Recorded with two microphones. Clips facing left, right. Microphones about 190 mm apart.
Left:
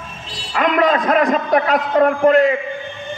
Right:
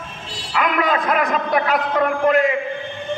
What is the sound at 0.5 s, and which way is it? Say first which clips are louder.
A man's voice: left 4 dB; 40° left (ahead or behind).